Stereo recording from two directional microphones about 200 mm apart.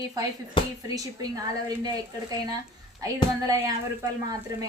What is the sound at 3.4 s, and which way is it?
Speech, 15° right (ahead or behind).